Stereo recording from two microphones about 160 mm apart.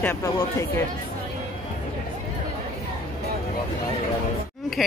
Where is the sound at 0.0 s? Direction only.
15° left (ahead or behind).